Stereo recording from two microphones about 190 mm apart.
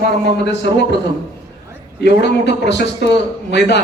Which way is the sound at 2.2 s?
65° left (ahead or behind).